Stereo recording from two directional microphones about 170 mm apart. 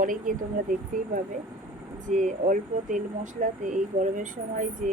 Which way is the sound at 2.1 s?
50° right (ahead or behind).